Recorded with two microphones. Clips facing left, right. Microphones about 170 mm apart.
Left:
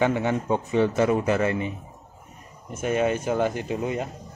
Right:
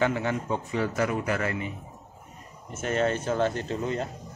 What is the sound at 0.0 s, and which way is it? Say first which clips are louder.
Speech: left 3 dB; 20° left (ahead or behind).